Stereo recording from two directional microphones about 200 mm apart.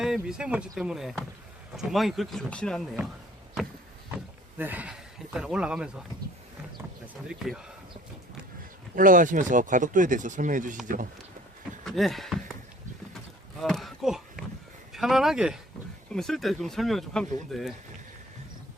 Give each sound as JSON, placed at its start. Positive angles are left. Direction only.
{"t": 0.0, "sound": "speech", "side_deg": -5}
{"t": 4.5, "sound": "speech", "side_deg": -10}
{"t": 7.3, "sound": "speech", "side_deg": -5}
{"t": 9.0, "sound": "speech", "side_deg": -40}
{"t": 11.9, "sound": "a sound", "side_deg": 0}
{"t": 13.6, "sound": "a sound", "side_deg": 0}
{"t": 14.9, "sound": "speech", "side_deg": 0}